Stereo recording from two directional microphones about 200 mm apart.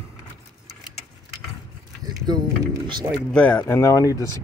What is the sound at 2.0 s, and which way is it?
Speech, 20° right (ahead or behind).